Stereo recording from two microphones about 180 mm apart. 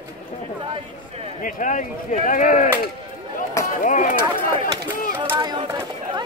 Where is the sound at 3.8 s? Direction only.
45° left (ahead or behind).